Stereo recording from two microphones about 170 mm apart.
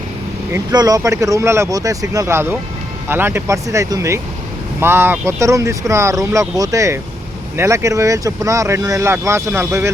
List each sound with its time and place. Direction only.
0.5 s speech: 20° right (ahead or behind)